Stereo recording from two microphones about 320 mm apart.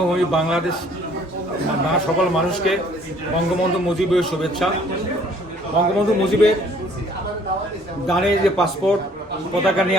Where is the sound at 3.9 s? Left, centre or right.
Centre.